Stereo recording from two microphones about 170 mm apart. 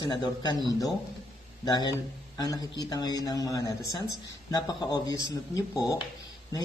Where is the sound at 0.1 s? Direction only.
25° left (ahead or behind).